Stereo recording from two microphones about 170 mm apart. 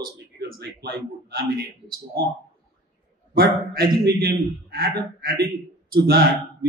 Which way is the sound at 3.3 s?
65° right (ahead or behind).